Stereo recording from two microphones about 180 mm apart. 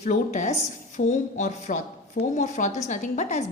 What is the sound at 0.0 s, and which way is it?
A woman's voice, 40° left (ahead or behind).